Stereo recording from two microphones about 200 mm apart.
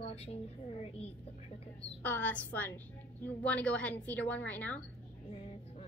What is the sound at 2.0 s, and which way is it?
A woman's voice, 10° left (ahead or behind).